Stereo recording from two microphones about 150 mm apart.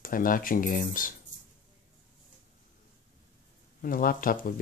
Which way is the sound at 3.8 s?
70° left (ahead or behind).